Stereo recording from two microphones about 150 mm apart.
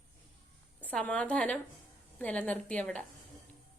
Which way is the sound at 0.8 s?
10° left (ahead or behind).